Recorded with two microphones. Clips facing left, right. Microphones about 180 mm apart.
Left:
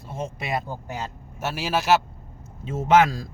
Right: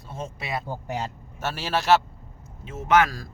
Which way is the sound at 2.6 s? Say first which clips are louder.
Left 3 dB; 25° left (ahead or behind).